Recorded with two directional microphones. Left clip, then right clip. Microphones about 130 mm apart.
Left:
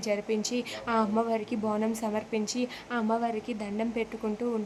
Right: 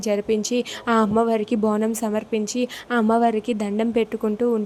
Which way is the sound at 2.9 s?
50° right (ahead or behind).